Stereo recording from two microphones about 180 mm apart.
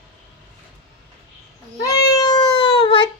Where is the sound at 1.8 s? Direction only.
20° left (ahead or behind).